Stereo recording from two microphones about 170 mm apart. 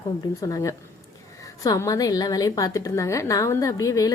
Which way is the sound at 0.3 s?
20° left (ahead or behind).